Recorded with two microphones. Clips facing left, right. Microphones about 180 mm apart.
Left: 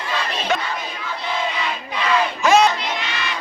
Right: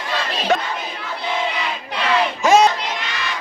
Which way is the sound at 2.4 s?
45° right (ahead or behind).